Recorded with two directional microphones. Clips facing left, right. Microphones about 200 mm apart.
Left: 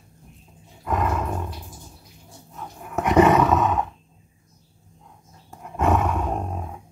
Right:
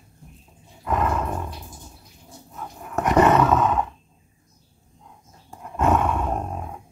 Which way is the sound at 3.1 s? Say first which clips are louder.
Left 1 dB; 5° left (ahead or behind).